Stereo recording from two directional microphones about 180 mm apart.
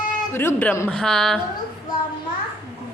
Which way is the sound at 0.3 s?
15° left (ahead or behind).